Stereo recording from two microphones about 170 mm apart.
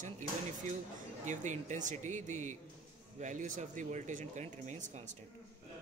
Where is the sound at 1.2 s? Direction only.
45° right (ahead or behind).